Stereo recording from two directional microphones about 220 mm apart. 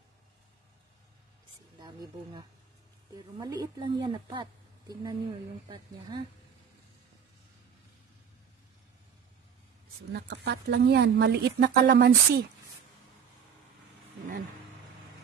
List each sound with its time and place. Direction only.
1.8 s a woman's voice: 20° right (ahead or behind)
10.1 s speech: 50° right (ahead or behind)